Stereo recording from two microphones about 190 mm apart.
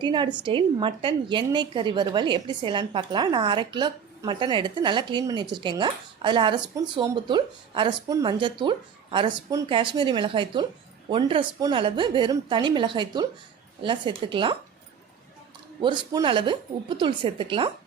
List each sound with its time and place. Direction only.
0.0 s a woman's voice: 25° right (ahead or behind)
15.8 s a woman's voice: 25° right (ahead or behind)